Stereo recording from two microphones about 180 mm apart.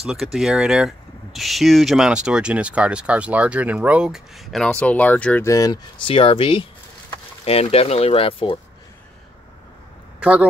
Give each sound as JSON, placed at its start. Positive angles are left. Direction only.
{"t": 0.0, "sound": "speech", "side_deg": 0}